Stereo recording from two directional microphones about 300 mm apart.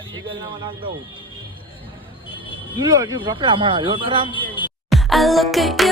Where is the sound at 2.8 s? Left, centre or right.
Centre.